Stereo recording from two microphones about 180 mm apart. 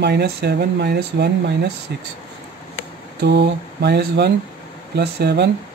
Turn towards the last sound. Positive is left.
turn(degrees=-70)  # may be behind; listen again after turning